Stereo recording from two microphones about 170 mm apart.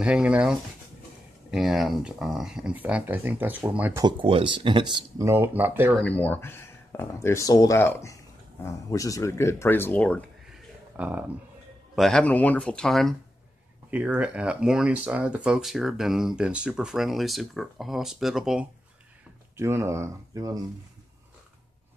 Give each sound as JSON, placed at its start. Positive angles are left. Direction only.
{"t": 0.0, "sound": "speech", "side_deg": -5}
{"t": 4.0, "sound": "speech", "side_deg": -30}
{"t": 5.3, "sound": "speech", "side_deg": -10}
{"t": 5.9, "sound": "speech", "side_deg": 10}
{"t": 11.0, "sound": "speech", "side_deg": -10}
{"t": 11.9, "sound": "speech", "side_deg": 0}
{"t": 13.8, "sound": "speech", "side_deg": -10}
{"t": 19.5, "sound": "speech", "side_deg": -15}